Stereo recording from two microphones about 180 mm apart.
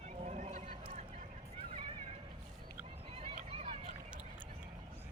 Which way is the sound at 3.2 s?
30° right (ahead or behind).